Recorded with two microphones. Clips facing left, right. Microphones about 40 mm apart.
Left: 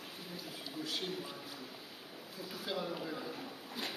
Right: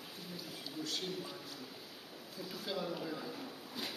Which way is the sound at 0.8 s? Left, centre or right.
Centre.